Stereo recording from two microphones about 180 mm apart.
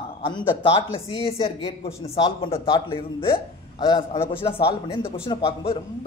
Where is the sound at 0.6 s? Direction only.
30° left (ahead or behind).